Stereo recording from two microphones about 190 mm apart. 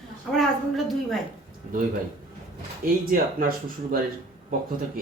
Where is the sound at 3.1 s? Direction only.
50° right (ahead or behind).